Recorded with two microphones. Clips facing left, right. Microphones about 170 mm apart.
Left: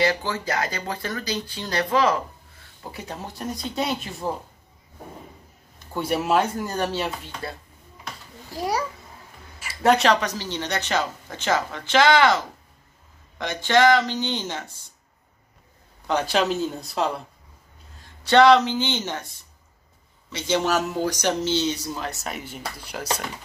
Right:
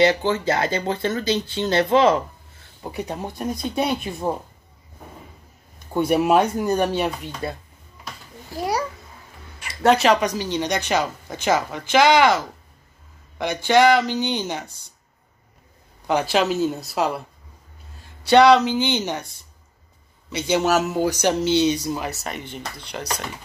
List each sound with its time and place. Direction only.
0.0 s speech: 25° right (ahead or behind)
5.9 s speech: 15° right (ahead or behind)
9.6 s a sound: centre (ahead or behind)
10.2 s speech: 15° right (ahead or behind)
16.1 s speech: 10° right (ahead or behind)
18.2 s speech: 10° right (ahead or behind)
22.1 s speech: centre (ahead or behind)